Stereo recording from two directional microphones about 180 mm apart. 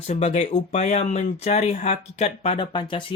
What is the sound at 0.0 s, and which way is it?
Speech, 35° left (ahead or behind).